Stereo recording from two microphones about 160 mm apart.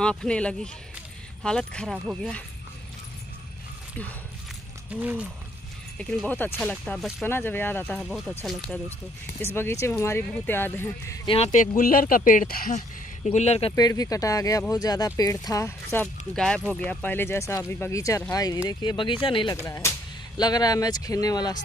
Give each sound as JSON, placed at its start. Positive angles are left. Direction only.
{"t": 0.0, "sound": "speech", "side_deg": 5}
{"t": 5.0, "sound": "speech", "side_deg": -5}
{"t": 5.9, "sound": "speech", "side_deg": 10}
{"t": 7.2, "sound": "speech", "side_deg": 15}
{"t": 8.0, "sound": "speech", "side_deg": 0}
{"t": 11.2, "sound": "speech", "side_deg": 40}
{"t": 13.7, "sound": "speech", "side_deg": 25}
{"t": 16.3, "sound": "speech", "side_deg": 5}
{"t": 19.5, "sound": "speech", "side_deg": 20}